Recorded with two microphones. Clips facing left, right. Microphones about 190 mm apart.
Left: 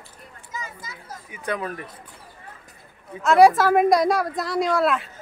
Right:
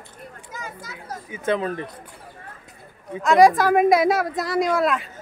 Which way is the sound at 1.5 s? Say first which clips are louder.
Right 5 dB; 25° right (ahead or behind).